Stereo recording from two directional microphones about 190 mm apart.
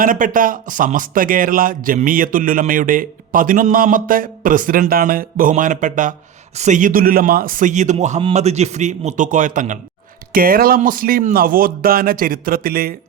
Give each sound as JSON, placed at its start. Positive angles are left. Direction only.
{"t": 0.0, "sound": "speech", "side_deg": -45}